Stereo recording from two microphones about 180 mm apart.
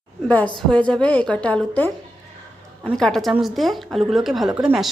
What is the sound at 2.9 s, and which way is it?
A woman's voice, centre (ahead or behind).